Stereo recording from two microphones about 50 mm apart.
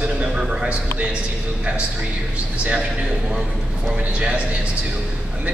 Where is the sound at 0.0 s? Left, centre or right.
Centre.